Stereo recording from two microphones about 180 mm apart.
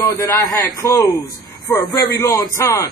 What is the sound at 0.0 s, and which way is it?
A man's voice, 20° left (ahead or behind).